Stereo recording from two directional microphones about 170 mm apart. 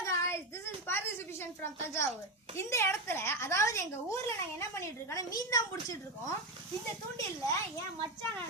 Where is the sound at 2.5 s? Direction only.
15° left (ahead or behind).